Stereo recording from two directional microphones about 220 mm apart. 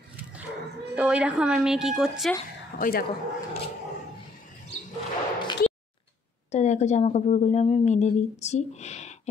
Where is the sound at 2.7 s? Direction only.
45° left (ahead or behind).